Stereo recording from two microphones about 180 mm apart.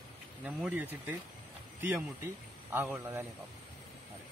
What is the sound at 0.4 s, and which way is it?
Speech, 5° right (ahead or behind).